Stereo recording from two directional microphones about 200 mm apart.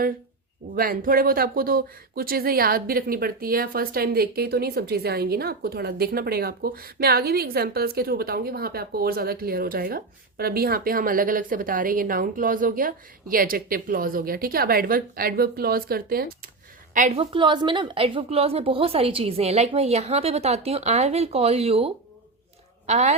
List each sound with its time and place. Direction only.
0.8 s a woman's voice: 45° right (ahead or behind)
17.2 s a woman's voice: 25° right (ahead or behind)